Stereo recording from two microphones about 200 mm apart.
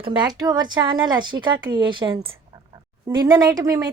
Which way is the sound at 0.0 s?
20° right (ahead or behind).